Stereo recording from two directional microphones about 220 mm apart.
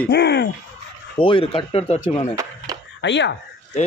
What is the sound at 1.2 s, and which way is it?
A man's voice, 25° left (ahead or behind).